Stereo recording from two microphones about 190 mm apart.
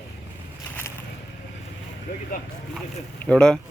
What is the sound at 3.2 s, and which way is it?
Speech, 5° left (ahead or behind).